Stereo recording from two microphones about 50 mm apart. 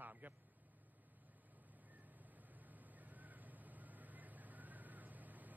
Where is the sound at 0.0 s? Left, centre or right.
Right.